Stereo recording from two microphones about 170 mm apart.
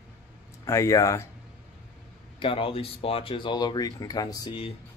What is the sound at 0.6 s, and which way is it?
Speech, 15° left (ahead or behind).